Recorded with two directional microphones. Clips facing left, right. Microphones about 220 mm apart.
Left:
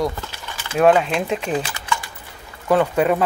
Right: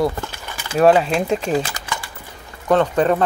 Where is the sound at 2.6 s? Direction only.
10° left (ahead or behind).